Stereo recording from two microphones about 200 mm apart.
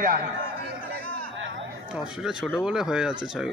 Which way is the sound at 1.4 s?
70° right (ahead or behind).